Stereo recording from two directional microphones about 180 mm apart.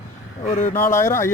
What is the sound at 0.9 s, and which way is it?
Speech, 15° left (ahead or behind).